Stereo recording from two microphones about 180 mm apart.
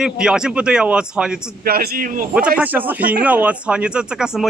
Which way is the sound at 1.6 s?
60° right (ahead or behind).